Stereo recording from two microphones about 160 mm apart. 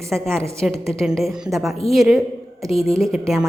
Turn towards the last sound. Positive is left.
turn(degrees=0)  # may be behind; listen again after turning